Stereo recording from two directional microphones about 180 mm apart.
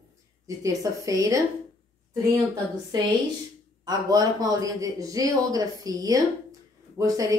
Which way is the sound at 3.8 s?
20° right (ahead or behind).